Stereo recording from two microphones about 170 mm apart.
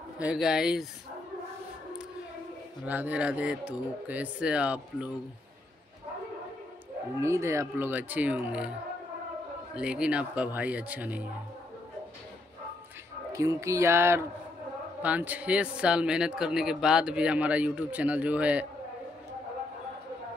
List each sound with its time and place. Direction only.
0.2 s speech: 5° right (ahead or behind)
2.8 s speech: 10° right (ahead or behind)
7.2 s speech: 15° right (ahead or behind)
9.8 s speech: 5° right (ahead or behind)
13.3 s speech: 20° right (ahead or behind)